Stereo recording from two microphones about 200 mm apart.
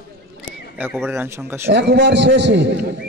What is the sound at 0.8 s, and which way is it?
Speech, 10° right (ahead or behind).